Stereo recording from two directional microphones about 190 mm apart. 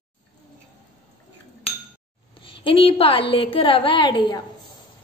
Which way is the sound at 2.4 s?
25° left (ahead or behind).